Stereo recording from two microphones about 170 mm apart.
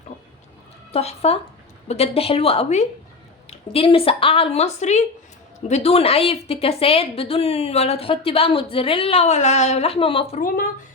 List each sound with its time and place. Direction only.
0.9 s a woman's voice: 35° left (ahead or behind)